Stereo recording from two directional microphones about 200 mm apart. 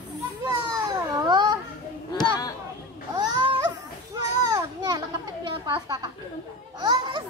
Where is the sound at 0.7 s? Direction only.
20° right (ahead or behind).